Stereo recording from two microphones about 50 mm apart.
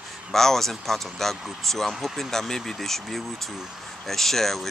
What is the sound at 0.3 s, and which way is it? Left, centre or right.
Speech, centre.